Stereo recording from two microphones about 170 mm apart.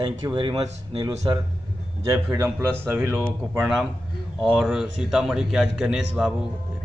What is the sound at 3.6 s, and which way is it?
A man's voice, 5° right (ahead or behind).